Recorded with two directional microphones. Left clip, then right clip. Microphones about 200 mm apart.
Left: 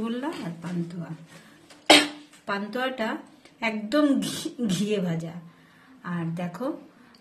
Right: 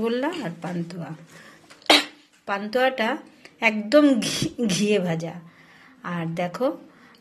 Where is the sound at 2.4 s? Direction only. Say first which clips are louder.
Right 6 dB; 30° right (ahead or behind).